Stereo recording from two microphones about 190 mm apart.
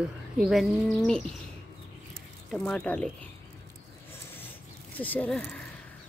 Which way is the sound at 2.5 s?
5° left (ahead or behind).